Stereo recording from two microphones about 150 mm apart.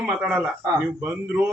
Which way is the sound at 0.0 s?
5° right (ahead or behind).